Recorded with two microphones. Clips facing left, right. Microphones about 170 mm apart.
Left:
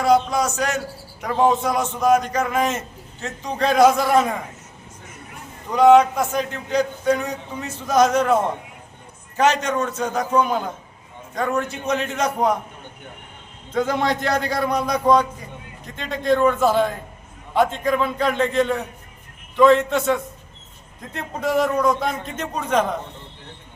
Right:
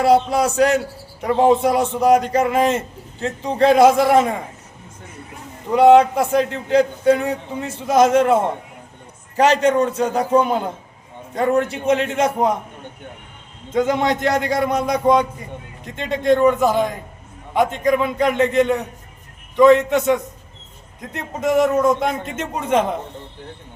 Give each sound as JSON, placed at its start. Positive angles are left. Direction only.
{"t": 0.0, "sound": "a man's voice", "side_deg": -30}
{"t": 5.7, "sound": "a man's voice", "side_deg": -30}
{"t": 9.4, "sound": "a man's voice", "side_deg": -30}
{"t": 13.7, "sound": "a man's voice", "side_deg": -20}